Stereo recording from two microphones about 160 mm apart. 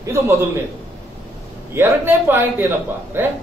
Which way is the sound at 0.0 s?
15° right (ahead or behind).